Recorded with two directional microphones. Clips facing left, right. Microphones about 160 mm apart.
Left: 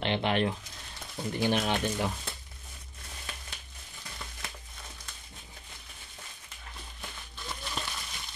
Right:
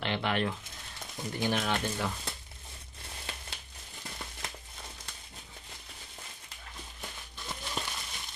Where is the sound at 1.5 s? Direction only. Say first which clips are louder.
Left 2 dB; 20° left (ahead or behind).